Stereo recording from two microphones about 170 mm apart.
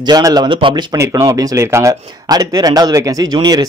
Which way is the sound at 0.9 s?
15° right (ahead or behind).